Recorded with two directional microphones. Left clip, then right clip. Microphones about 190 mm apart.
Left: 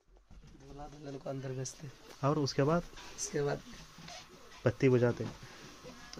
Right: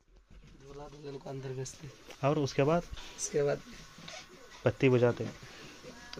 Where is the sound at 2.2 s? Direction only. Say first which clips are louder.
Right 2 dB; 10° left (ahead or behind).